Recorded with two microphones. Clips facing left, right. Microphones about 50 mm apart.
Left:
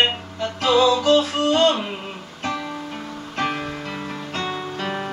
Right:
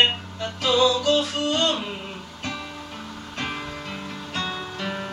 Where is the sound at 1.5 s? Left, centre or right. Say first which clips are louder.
Left 7 dB; left.